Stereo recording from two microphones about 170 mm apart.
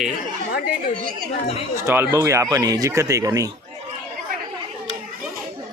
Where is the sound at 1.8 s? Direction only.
15° right (ahead or behind).